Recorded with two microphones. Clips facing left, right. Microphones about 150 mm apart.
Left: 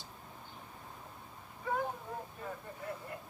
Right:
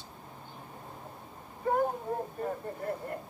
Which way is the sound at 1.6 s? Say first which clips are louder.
Right 7 dB; 45° right (ahead or behind).